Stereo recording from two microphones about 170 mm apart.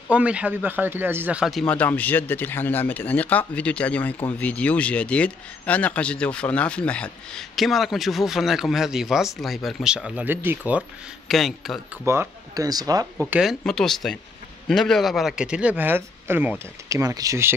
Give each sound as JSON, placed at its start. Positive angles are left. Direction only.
{"t": 0.1, "sound": "speech", "side_deg": -5}
{"t": 10.8, "sound": "speech", "side_deg": 0}
{"t": 12.0, "sound": "speech", "side_deg": -15}
{"t": 13.3, "sound": "speech", "side_deg": 0}